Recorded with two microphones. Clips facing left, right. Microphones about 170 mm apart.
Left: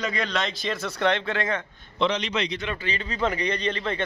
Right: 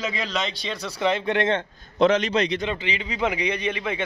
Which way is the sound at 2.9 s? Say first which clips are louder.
Left 2 dB; 15° right (ahead or behind).